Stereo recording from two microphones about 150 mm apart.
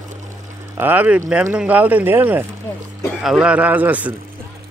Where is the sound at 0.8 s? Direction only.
10° right (ahead or behind).